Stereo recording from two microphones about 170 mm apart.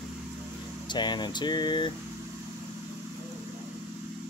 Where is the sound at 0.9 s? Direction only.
25° left (ahead or behind).